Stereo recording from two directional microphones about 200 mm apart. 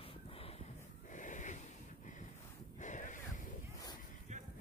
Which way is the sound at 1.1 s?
40° left (ahead or behind).